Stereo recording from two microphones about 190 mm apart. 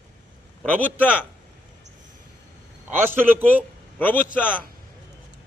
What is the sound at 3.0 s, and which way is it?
Speech, 10° right (ahead or behind).